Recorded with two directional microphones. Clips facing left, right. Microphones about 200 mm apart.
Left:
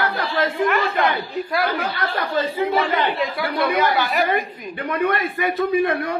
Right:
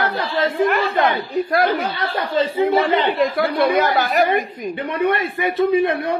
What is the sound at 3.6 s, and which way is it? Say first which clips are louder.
Speech: right 2 dB; 45° right (ahead or behind).